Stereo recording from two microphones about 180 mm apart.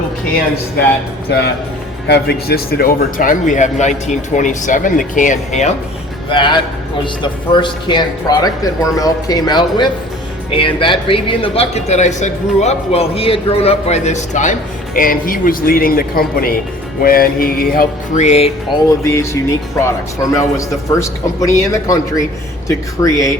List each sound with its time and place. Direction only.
2.0 s speech: 65° left (ahead or behind); by 5.7 s 40° left (ahead or behind)
6.3 s speech: 25° left (ahead or behind)
14.9 s speech: 50° left (ahead or behind)
18.3 s speech: 35° left (ahead or behind)
19.0 s a man's voice: 15° left (ahead or behind)